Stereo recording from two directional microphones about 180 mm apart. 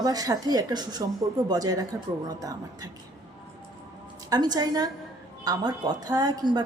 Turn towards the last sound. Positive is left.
turn(degrees=-20)  # may be behind; listen again after turning